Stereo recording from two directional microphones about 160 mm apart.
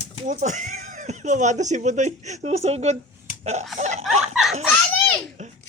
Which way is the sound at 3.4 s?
45° right (ahead or behind).